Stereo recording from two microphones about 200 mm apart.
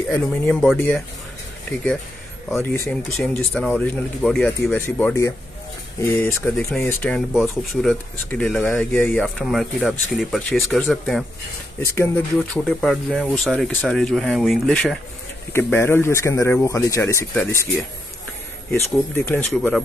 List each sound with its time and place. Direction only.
0.1 s speech: 5° left (ahead or behind)
2.5 s speech: 10° left (ahead or behind)
11.8 s speech: 10° left (ahead or behind)
18.7 s speech: 10° left (ahead or behind)